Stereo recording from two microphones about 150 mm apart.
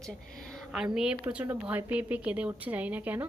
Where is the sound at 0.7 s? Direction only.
5° right (ahead or behind).